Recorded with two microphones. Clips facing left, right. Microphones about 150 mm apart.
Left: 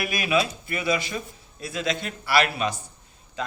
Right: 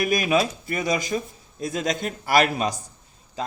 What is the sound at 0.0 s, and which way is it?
A man's voice, 45° right (ahead or behind).